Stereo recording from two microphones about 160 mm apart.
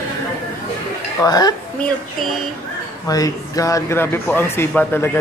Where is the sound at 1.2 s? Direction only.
25° left (ahead or behind).